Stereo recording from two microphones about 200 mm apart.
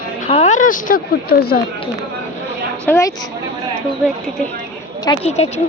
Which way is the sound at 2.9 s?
15° left (ahead or behind).